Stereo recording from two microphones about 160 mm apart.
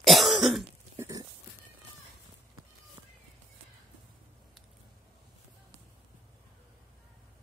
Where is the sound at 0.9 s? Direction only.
20° right (ahead or behind).